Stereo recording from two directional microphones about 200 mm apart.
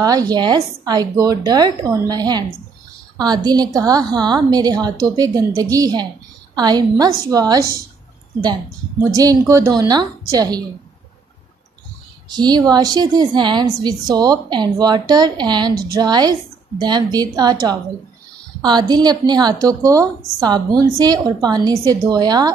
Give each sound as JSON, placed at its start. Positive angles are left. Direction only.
{"t": 0.0, "sound": "a woman's voice", "side_deg": -20}
{"t": 9.0, "sound": "a woman's voice", "side_deg": -15}
{"t": 12.3, "sound": "a woman's voice", "side_deg": -20}